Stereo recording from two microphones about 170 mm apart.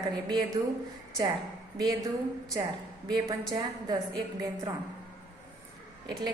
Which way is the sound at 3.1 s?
25° right (ahead or behind).